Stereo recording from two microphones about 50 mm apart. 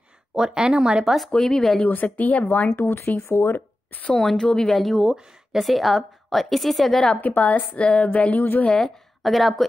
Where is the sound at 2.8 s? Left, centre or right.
Left.